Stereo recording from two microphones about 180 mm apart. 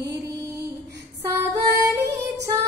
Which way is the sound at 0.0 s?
15° right (ahead or behind).